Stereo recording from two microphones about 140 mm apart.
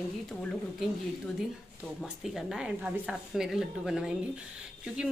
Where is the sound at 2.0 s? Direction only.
Centre (ahead or behind).